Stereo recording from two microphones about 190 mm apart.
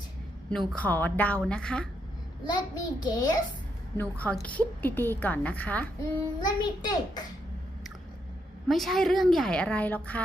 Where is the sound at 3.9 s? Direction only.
10° left (ahead or behind).